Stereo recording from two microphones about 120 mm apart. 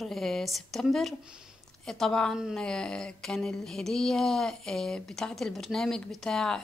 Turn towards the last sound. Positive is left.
turn(degrees=5)  # may be behind; listen again after turning